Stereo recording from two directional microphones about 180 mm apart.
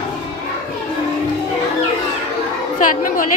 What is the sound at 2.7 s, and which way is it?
Speech, 50° left (ahead or behind).